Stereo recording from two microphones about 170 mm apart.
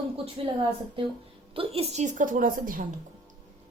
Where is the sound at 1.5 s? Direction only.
35° right (ahead or behind); by 2.8 s 55° right (ahead or behind).